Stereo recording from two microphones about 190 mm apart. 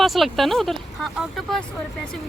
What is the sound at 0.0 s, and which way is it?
Speech, centre (ahead or behind).